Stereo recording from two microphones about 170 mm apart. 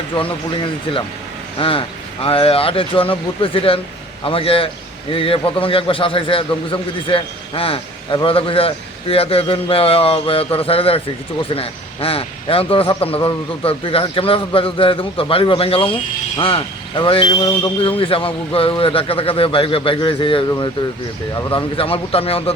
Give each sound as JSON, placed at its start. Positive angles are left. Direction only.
{"t": 0.2, "sound": "a man's voice", "side_deg": 30}